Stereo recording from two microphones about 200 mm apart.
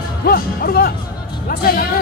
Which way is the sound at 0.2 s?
50° left (ahead or behind).